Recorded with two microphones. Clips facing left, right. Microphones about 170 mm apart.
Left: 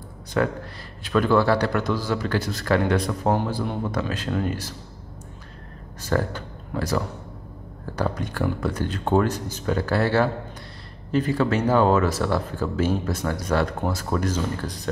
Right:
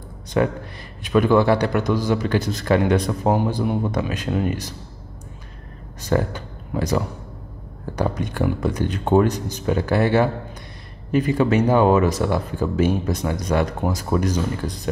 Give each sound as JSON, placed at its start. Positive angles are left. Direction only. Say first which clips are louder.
{"t": 0.3, "sound": "speech", "louder": "right 3 dB", "side_deg": -15}
{"t": 5.9, "sound": "speech", "louder": "right 3 dB", "side_deg": -15}